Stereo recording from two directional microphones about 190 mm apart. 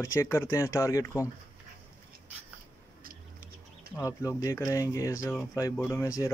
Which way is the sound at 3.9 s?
15° left (ahead or behind).